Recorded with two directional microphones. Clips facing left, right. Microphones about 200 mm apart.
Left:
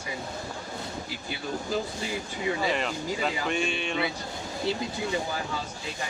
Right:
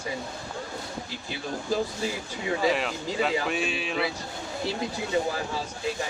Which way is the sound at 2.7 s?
Centre (ahead or behind).